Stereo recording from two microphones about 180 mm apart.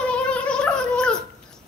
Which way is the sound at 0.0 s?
5° left (ahead or behind).